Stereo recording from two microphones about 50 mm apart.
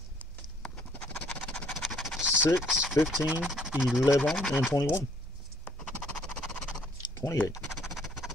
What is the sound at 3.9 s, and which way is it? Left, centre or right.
Speech, left.